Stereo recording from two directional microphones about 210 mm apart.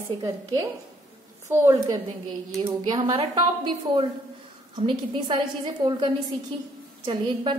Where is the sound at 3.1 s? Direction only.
25° right (ahead or behind).